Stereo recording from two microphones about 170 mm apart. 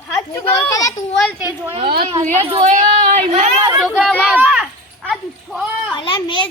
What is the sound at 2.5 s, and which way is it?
Speech, 45° right (ahead or behind).